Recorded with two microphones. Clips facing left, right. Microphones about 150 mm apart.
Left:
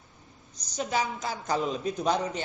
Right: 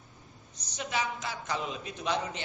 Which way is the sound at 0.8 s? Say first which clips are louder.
Left 4 dB; 40° left (ahead or behind).